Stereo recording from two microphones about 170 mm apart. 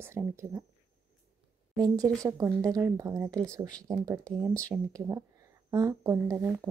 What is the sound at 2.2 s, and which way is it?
A woman's voice, 20° right (ahead or behind).